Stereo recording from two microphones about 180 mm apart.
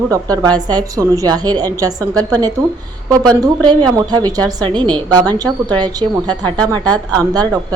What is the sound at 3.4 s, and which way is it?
A woman's voice, 25° right (ahead or behind).